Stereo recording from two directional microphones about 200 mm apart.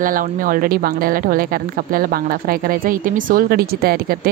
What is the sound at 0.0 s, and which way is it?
Speech, 45° right (ahead or behind).